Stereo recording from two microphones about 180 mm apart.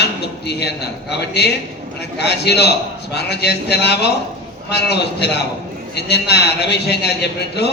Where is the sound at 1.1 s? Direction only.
65° left (ahead or behind).